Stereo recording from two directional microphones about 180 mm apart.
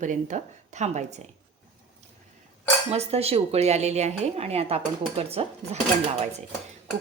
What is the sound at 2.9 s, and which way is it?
A woman's voice, 35° right (ahead or behind).